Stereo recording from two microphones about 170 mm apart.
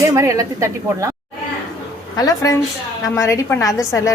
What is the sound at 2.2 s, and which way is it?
A woman's voice, 20° left (ahead or behind).